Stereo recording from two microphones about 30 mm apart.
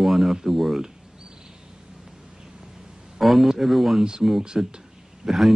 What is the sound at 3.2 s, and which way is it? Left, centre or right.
Speech, centre.